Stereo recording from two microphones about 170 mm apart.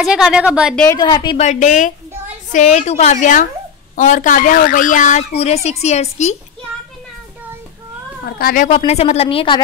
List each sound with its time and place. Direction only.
0.0 s a woman's voice: 5° right (ahead or behind)
0.8 s a woman's voice: 25° left (ahead or behind)
1.4 s a woman's voice: 45° left (ahead or behind)
8.2 s speech: 60° left (ahead or behind)
8.6 s speech: 40° left (ahead or behind)